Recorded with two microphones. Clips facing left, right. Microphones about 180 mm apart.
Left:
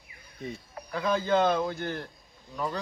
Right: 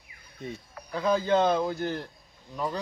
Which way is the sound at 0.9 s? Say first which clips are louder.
Right 2 dB; 20° right (ahead or behind).